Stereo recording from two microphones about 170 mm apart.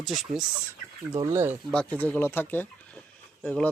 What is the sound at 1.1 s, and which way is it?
Speech, 15° right (ahead or behind).